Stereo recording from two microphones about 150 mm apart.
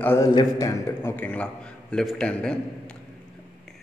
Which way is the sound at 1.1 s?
10° left (ahead or behind).